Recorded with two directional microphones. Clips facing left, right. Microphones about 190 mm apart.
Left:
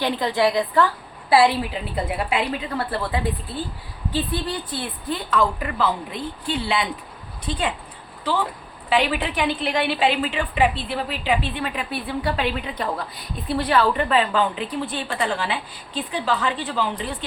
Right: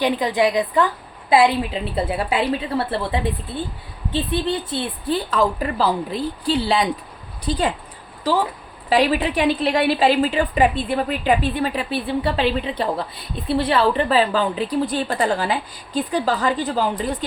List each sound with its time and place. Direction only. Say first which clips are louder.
0.0 s a woman's voice: right 2 dB; 15° right (ahead or behind); by 7.6 s 35° right (ahead or behind)
8.9 s a woman's voice: right 4 dB; 35° right (ahead or behind)